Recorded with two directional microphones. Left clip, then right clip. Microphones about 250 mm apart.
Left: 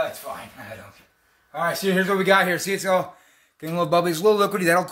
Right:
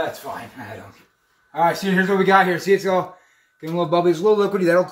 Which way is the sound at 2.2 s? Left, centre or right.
Left.